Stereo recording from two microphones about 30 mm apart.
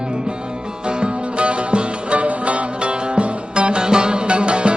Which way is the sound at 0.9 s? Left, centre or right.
Right.